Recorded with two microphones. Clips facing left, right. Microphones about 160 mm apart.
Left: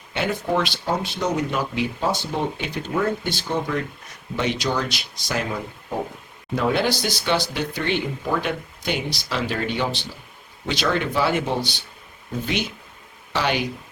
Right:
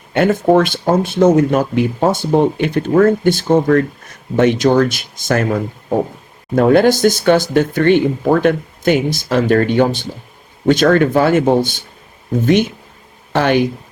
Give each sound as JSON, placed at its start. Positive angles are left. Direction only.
{"t": 0.1, "sound": "speech", "side_deg": -50}